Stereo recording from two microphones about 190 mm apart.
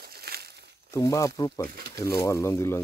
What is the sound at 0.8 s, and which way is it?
Speech, 15° left (ahead or behind).